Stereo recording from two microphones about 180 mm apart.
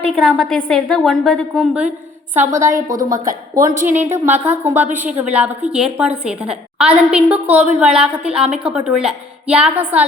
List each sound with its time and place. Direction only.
0.2 s a woman's voice: centre (ahead or behind)
2.5 s a woman's voice: 15° right (ahead or behind)